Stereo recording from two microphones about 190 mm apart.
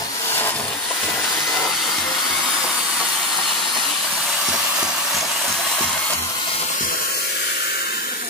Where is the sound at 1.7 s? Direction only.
Centre (ahead or behind).